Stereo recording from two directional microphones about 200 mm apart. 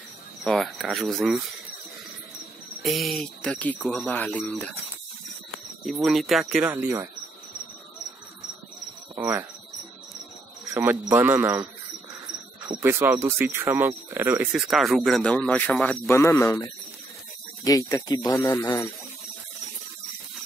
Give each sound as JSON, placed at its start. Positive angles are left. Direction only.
{"t": 0.4, "sound": "speech", "side_deg": 0}
{"t": 2.8, "sound": "speech", "side_deg": 0}
{"t": 5.9, "sound": "speech", "side_deg": 0}
{"t": 9.1, "sound": "speech", "side_deg": -15}
{"t": 10.7, "sound": "speech", "side_deg": -15}
{"t": 12.8, "sound": "speech", "side_deg": -10}